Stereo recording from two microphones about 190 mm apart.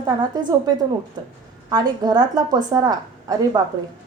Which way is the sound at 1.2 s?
20° right (ahead or behind).